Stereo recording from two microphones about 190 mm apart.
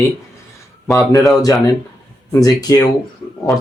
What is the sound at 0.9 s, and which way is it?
Speech, 15° left (ahead or behind).